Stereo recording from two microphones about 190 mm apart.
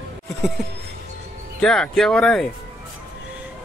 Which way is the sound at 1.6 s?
5° left (ahead or behind).